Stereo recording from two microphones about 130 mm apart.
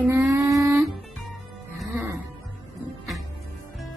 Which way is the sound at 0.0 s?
15° right (ahead or behind).